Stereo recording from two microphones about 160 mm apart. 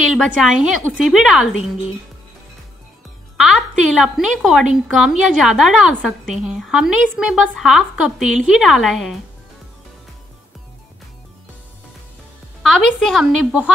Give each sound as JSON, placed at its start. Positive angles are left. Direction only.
{"t": 0.1, "sound": "a woman's voice", "side_deg": 0}
{"t": 1.6, "sound": "speech", "side_deg": 40}
{"t": 3.3, "sound": "a woman's voice", "side_deg": 0}
{"t": 12.6, "sound": "a woman's voice", "side_deg": 5}